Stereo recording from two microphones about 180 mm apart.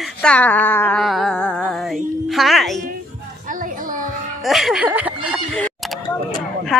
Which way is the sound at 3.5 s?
50° right (ahead or behind).